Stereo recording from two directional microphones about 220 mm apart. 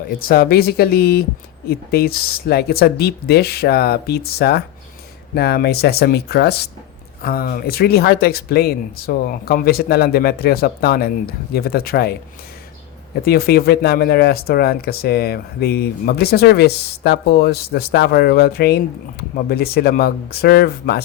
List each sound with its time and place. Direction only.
0.2 s speech: 45° left (ahead or behind)
13.2 s speech: 45° left (ahead or behind)